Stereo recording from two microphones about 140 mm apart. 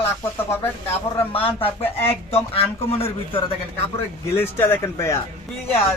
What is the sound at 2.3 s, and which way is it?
A man's voice, 45° left (ahead or behind).